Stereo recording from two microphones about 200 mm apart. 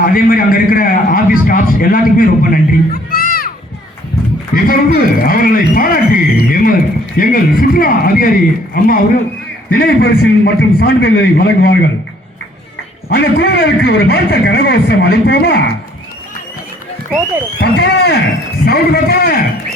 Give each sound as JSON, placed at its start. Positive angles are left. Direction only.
{"t": 0.0, "sound": "a man's voice", "side_deg": 45}
{"t": 4.5, "sound": "a man's voice", "side_deg": 45}
{"t": 13.1, "sound": "a man's voice", "side_deg": 50}
{"t": 17.6, "sound": "a man's voice", "side_deg": 55}